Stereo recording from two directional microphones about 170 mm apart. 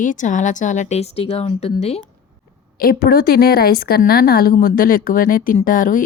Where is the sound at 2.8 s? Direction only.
60° left (ahead or behind).